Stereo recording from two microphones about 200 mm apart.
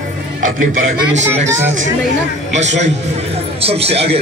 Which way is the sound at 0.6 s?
85° right.